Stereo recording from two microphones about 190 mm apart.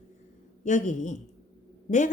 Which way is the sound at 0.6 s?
40° left (ahead or behind).